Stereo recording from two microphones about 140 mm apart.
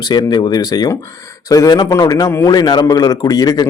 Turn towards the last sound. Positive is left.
turn(degrees=30)  # may be behind; listen again after turning